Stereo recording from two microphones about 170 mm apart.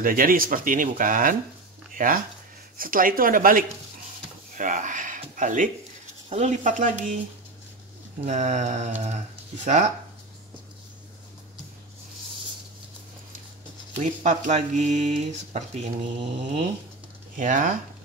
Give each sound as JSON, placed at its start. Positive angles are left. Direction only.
{"t": 0.0, "sound": "speech", "side_deg": -55}
{"t": 8.3, "sound": "speech", "side_deg": -45}
{"t": 13.9, "sound": "speech", "side_deg": -45}
{"t": 17.4, "sound": "speech", "side_deg": -50}